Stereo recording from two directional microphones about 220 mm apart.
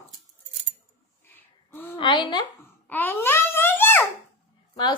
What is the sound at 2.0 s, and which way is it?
Speech, 20° left (ahead or behind).